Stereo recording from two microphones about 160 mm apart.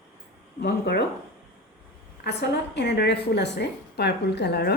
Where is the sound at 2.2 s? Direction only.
90° left.